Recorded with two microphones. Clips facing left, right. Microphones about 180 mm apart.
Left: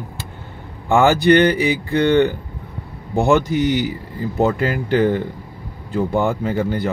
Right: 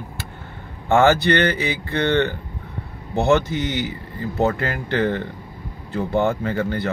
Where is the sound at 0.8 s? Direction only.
15° left (ahead or behind).